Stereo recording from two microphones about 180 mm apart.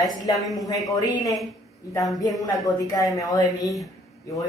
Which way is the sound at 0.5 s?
20° left (ahead or behind).